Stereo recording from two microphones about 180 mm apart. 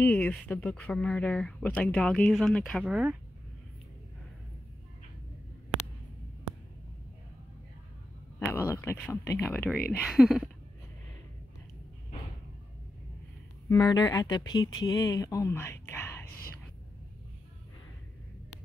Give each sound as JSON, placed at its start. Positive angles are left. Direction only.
{"t": 0.0, "sound": "speech", "side_deg": 10}
{"t": 8.5, "sound": "a sound", "side_deg": 15}
{"t": 9.1, "sound": "speech", "side_deg": 15}
{"t": 10.0, "sound": "speech", "side_deg": -5}
{"t": 13.7, "sound": "speech", "side_deg": 20}